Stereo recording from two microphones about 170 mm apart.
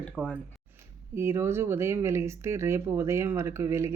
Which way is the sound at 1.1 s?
15° right (ahead or behind).